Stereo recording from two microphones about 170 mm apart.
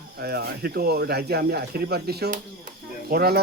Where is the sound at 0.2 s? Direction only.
70° right (ahead or behind).